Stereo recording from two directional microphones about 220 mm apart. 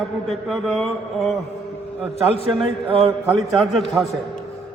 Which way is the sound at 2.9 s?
25° right (ahead or behind).